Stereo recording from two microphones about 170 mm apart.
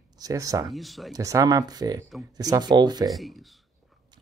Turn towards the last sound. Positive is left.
turn(degrees=-25)  # may be behind; listen again after turning